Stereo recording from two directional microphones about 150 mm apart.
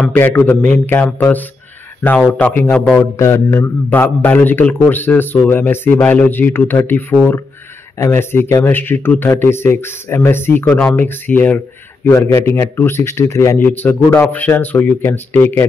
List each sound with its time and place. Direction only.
0.0 s a man's voice: 10° left (ahead or behind)
3.2 s a man's voice: 15° left (ahead or behind)